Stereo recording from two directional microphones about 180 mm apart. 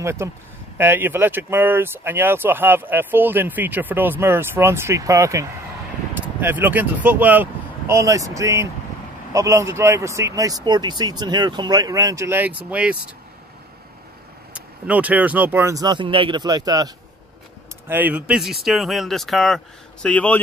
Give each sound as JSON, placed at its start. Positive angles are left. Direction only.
{"t": 0.0, "sound": "speech", "side_deg": -15}
{"t": 14.5, "sound": "speech", "side_deg": -10}
{"t": 17.8, "sound": "speech", "side_deg": -10}